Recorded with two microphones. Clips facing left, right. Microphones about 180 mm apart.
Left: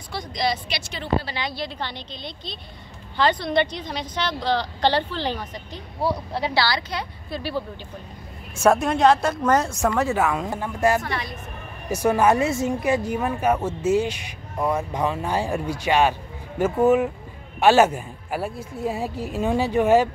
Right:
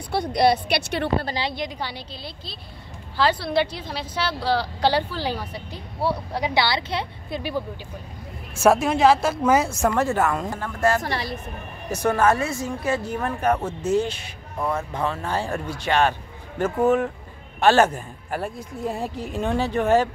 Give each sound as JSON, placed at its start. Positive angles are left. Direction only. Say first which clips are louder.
{"t": 0.1, "sound": "speech", "louder": "right 7 dB", "side_deg": -60}
{"t": 1.5, "sound": "a woman's voice", "louder": "right 1 dB", "side_deg": -15}
{"t": 6.4, "sound": "a woman's voice", "louder": "right 1 dB", "side_deg": -20}
{"t": 8.5, "sound": "a woman's voice", "louder": "right 1 dB", "side_deg": -5}
{"t": 10.5, "sound": "a woman's voice", "louder": "left 1 dB", "side_deg": 15}
{"t": 11.0, "sound": "speech", "louder": "right 1 dB", "side_deg": -35}
{"t": 11.9, "sound": "a woman's voice", "louder": "left 1 dB", "side_deg": 10}